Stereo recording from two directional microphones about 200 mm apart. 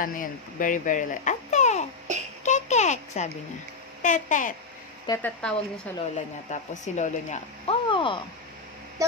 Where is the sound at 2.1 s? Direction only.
35° right (ahead or behind).